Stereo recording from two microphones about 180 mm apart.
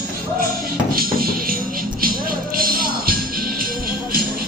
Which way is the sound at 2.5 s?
55° right (ahead or behind).